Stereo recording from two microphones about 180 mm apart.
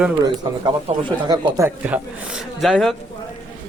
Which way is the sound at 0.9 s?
35° right (ahead or behind).